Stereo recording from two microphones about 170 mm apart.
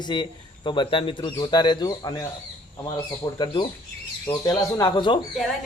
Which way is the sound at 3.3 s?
25° left (ahead or behind).